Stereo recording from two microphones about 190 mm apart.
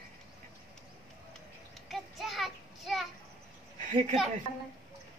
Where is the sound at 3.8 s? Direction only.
40° right (ahead or behind).